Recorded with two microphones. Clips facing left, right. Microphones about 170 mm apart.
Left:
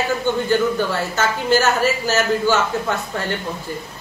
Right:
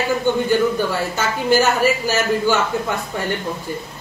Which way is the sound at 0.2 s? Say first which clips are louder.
Right 2 dB; 10° right (ahead or behind).